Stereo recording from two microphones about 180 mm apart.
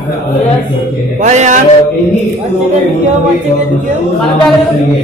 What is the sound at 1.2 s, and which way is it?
Speech, 40° right (ahead or behind).